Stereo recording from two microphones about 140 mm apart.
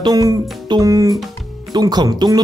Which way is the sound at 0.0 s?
30° right (ahead or behind).